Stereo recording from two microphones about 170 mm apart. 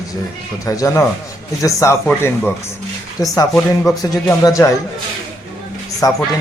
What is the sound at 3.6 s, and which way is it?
Speech, centre (ahead or behind).